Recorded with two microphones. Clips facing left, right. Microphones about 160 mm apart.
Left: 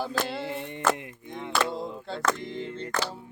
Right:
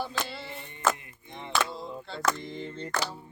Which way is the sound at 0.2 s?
55° left (ahead or behind).